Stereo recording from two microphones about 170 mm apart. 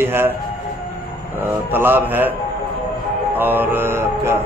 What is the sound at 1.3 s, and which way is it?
A man's voice, 10° right (ahead or behind).